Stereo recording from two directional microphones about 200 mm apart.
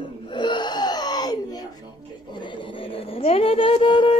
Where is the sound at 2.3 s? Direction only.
25° left (ahead or behind).